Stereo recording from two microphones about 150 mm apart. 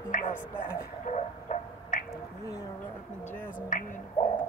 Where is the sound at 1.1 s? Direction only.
55° left (ahead or behind).